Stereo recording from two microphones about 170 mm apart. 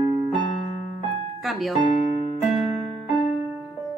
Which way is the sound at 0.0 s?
30° right (ahead or behind).